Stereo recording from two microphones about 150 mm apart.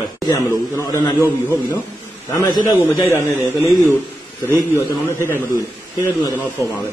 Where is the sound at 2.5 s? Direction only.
20° left (ahead or behind).